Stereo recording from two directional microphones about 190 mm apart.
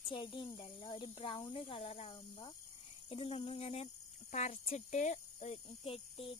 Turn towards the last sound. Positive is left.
turn(degrees=30)  # may be behind; listen again after turning